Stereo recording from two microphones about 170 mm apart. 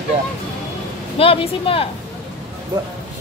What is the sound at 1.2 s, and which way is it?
Speech, 35° left (ahead or behind).